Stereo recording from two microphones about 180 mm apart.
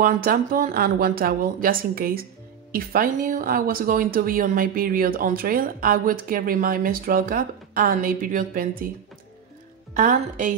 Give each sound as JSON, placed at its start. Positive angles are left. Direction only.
{"t": 0.0, "sound": "speech", "side_deg": -55}
{"t": 9.9, "sound": "speech", "side_deg": -45}